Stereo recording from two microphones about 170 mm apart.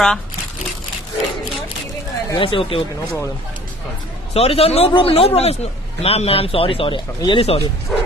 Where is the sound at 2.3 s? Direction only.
30° left (ahead or behind).